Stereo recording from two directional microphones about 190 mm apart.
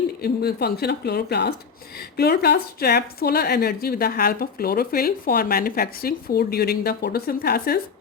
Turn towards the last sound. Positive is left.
turn(degrees=55)  # may be behind; listen again after turning